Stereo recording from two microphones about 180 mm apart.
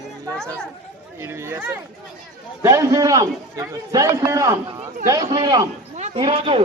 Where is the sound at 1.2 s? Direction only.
15° right (ahead or behind).